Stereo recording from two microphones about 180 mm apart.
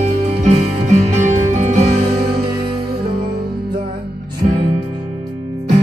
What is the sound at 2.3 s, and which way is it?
Music, 25° right (ahead or behind).